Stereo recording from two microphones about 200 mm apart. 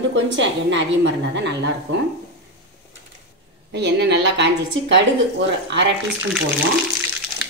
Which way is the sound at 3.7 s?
60° right (ahead or behind).